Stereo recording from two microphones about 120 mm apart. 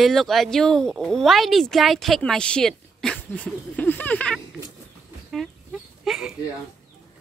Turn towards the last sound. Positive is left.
turn(degrees=-5)  # may be behind; listen again after turning